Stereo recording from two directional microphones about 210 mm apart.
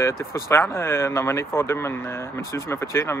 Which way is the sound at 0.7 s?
10° left (ahead or behind).